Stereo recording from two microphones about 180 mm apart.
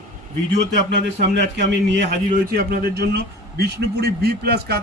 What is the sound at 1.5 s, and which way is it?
Speech, 70° right (ahead or behind).